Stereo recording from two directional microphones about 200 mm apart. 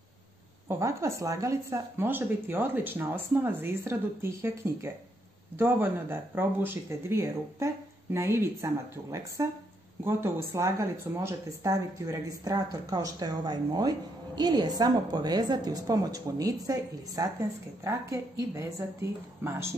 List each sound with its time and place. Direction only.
0.7 s a woman's voice: 15° right (ahead or behind)